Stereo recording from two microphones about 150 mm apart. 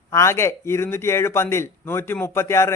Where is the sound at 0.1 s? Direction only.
20° left (ahead or behind).